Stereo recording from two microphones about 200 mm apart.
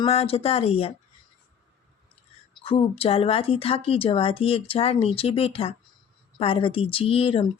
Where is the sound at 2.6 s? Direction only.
30° left (ahead or behind).